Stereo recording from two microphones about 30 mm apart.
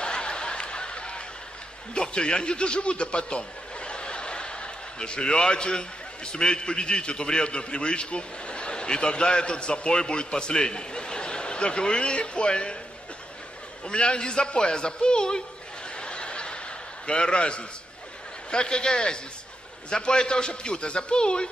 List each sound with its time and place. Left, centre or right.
0.0 s a sound: left
2.0 s a man's voice: left
13.8 s a man's voice: left
16.0 s chuckle: left
18.5 s a man's voice: left